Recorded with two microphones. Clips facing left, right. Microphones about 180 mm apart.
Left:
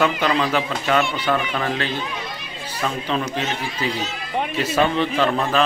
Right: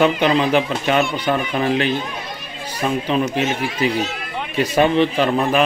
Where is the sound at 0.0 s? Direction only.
20° right (ahead or behind).